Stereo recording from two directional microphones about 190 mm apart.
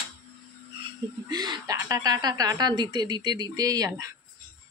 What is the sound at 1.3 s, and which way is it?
A woman's voice, 20° right (ahead or behind).